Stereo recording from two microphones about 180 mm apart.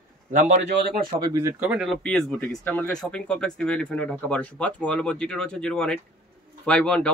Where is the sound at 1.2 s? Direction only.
15° right (ahead or behind).